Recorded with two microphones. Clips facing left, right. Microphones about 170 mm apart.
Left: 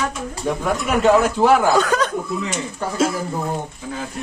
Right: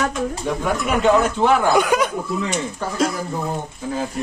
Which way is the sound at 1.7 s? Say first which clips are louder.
Right 1 dB; 10° right (ahead or behind).